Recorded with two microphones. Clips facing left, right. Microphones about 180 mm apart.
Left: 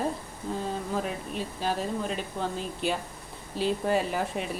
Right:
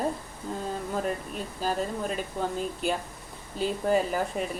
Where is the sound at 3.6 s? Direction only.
Centre (ahead or behind).